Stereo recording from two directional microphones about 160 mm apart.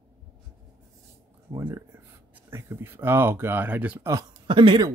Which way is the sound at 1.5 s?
20° right (ahead or behind).